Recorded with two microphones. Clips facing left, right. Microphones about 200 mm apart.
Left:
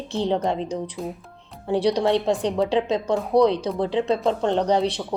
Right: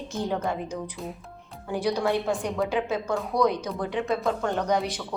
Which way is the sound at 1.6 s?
30° left (ahead or behind).